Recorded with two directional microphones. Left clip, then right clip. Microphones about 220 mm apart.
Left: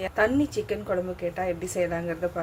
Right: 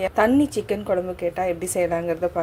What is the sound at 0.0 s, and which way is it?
A woman's voice, 20° right (ahead or behind).